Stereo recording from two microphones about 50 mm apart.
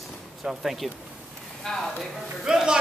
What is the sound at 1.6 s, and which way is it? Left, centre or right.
Speech, centre.